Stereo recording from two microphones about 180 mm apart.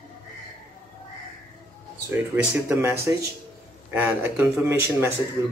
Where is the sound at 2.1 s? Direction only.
10° right (ahead or behind).